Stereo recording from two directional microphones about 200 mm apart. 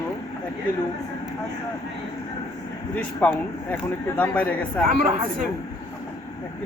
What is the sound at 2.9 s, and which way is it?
Speech, 10° left (ahead or behind).